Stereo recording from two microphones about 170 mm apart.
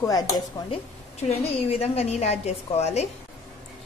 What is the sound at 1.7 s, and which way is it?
Speech, 35° left (ahead or behind).